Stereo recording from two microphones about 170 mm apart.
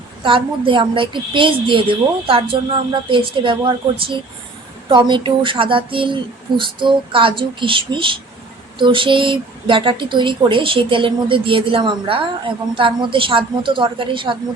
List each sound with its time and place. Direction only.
0.2 s a woman's voice: 30° right (ahead or behind)